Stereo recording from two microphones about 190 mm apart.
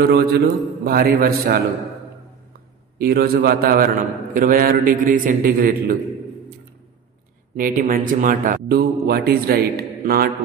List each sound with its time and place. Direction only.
0.1 s a man's voice: 55° right (ahead or behind)
3.0 s a man's voice: 55° right (ahead or behind)
7.5 s a man's voice: 45° right (ahead or behind)